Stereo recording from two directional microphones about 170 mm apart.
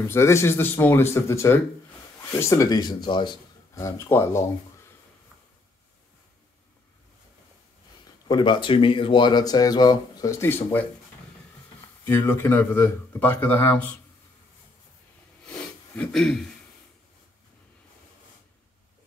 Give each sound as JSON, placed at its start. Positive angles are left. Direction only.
{"t": 0.0, "sound": "speech", "side_deg": 15}
{"t": 8.3, "sound": "speech", "side_deg": 25}
{"t": 12.0, "sound": "speech", "side_deg": 10}
{"t": 15.4, "sound": "a sound", "side_deg": 5}